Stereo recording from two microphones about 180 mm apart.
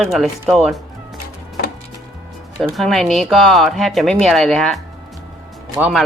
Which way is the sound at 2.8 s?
Centre (ahead or behind).